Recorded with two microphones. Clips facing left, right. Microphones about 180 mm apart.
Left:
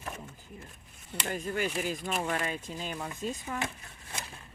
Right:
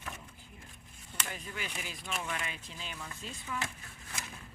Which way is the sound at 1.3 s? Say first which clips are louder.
Left 13 dB; 45° left (ahead or behind).